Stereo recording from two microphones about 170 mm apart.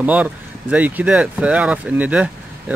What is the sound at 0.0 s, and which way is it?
Speech, 10° right (ahead or behind).